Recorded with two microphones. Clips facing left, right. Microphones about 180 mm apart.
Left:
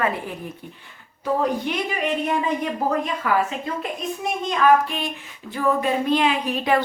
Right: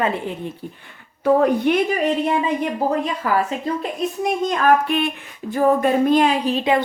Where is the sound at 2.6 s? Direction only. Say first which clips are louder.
Right 3 dB; 30° right (ahead or behind).